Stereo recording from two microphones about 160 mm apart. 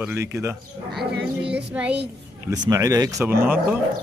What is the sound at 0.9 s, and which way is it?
Speech, 90° right.